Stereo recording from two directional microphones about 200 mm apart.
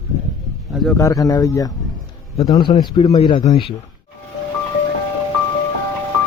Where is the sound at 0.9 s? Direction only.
15° left (ahead or behind).